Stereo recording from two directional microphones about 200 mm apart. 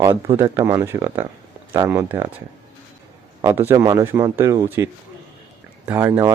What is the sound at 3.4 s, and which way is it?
Speech, 15° right (ahead or behind).